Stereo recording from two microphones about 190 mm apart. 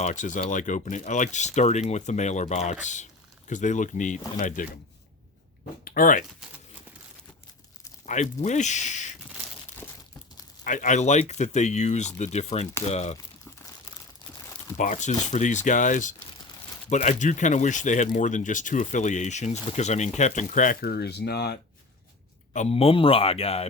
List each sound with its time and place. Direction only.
0.0 s speech: 40° left (ahead or behind)
5.8 s speech: 50° left (ahead or behind)
8.0 s speech: 40° left (ahead or behind)
10.6 s speech: 40° left (ahead or behind)
14.8 s speech: 40° left (ahead or behind); by 21.6 s 60° left (ahead or behind)
22.5 s speech: 35° left (ahead or behind)